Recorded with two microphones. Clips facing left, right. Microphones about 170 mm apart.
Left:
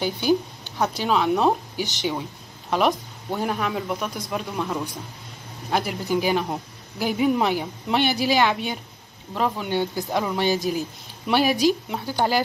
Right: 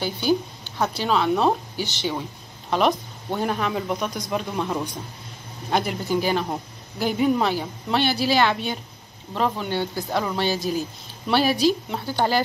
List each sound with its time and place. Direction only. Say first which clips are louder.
0.0 s speech: left 1 dB; 15° left (ahead or behind)
2.7 s speech: right 1 dB; centre (ahead or behind)
6.0 s speech: even; 15° left (ahead or behind)